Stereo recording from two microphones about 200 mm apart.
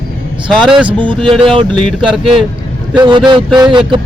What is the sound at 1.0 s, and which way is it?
Speech, 25° right (ahead or behind).